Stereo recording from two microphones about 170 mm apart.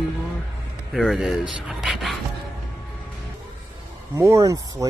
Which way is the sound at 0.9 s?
Centre (ahead or behind).